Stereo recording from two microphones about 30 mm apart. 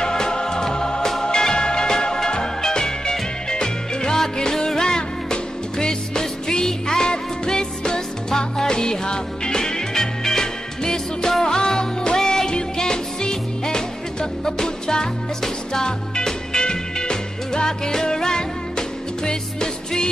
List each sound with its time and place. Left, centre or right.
0.0 s music: left